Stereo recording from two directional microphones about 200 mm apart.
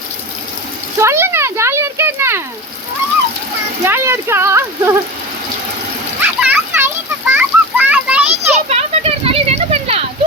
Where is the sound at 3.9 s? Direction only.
10° right (ahead or behind).